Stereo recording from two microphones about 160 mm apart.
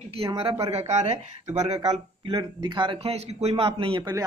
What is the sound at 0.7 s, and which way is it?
Speech, 40° right (ahead or behind).